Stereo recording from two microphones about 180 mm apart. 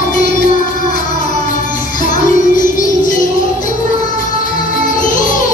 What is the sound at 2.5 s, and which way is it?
Music, 45° left (ahead or behind).